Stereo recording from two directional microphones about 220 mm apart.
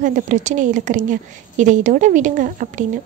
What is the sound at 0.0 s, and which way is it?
A woman's voice, 35° right (ahead or behind).